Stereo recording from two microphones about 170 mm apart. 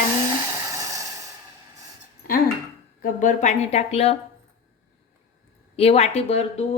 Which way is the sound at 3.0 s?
50° left (ahead or behind).